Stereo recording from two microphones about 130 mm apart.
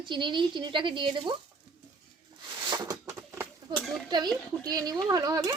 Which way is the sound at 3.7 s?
Centre (ahead or behind).